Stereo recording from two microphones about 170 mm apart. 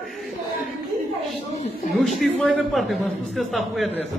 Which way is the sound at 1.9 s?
Centre (ahead or behind).